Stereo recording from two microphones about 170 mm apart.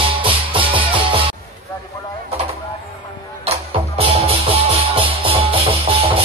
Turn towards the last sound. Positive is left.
turn(degrees=-30)  # may be behind; listen again after turning